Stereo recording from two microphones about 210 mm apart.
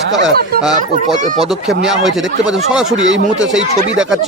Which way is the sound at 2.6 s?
Centre (ahead or behind).